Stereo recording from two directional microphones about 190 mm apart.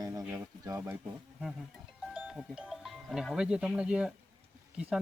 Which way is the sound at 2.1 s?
5° right (ahead or behind).